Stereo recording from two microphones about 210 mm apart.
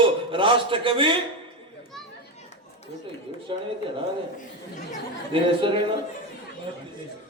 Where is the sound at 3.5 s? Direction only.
25° right (ahead or behind).